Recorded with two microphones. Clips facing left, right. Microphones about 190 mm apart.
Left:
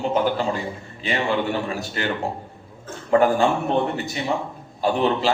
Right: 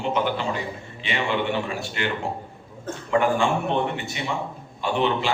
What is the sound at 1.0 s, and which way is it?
A man's voice, 40° left (ahead or behind).